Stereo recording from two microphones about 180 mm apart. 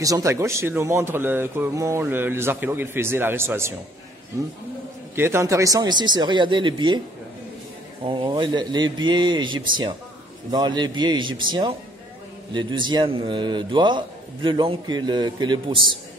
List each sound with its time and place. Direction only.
0.0 s speech: 15° right (ahead or behind)
5.1 s a man's voice: 15° right (ahead or behind)
8.0 s a man's voice: 30° right (ahead or behind)